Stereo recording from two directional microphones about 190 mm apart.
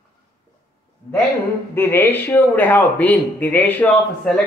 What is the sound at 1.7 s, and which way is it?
Speech, 10° left (ahead or behind).